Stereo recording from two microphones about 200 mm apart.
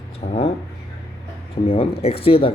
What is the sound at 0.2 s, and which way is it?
Speech, 30° left (ahead or behind).